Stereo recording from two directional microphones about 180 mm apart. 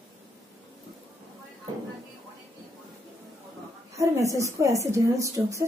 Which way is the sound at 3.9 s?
15° right (ahead or behind).